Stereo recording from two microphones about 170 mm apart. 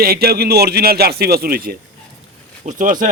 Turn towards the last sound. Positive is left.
turn(degrees=-50)  # may be behind; listen again after turning